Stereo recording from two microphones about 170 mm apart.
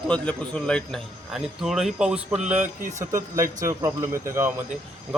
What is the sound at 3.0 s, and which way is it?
Speech, 15° right (ahead or behind).